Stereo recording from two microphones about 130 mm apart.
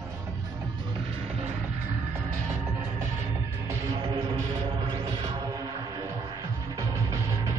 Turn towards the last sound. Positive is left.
turn(degrees=-30)  # may be behind; listen again after turning